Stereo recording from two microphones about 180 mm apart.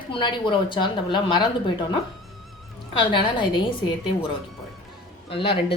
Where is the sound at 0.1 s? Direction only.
25° left (ahead or behind).